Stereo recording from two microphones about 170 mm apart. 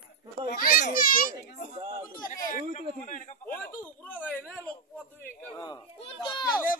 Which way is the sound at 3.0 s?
50° left (ahead or behind).